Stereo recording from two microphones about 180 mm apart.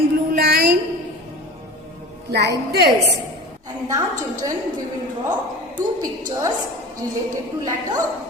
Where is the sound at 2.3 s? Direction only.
65° right (ahead or behind).